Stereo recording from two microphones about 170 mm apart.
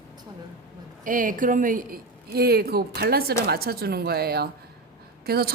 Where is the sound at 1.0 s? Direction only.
50° right (ahead or behind).